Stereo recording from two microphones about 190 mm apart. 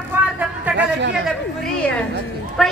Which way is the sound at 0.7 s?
70° right (ahead or behind).